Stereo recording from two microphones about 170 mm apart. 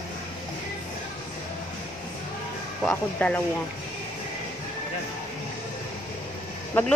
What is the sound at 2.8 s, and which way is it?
Speech, 5° left (ahead or behind).